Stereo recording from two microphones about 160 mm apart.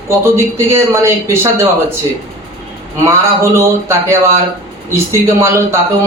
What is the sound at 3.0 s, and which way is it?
Speech, 15° right (ahead or behind).